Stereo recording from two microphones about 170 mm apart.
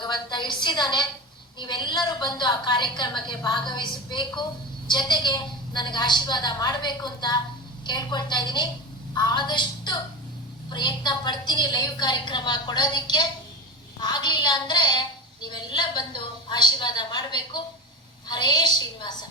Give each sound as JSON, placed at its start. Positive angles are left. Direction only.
{"t": 0.0, "sound": "a woman's voice", "side_deg": 25}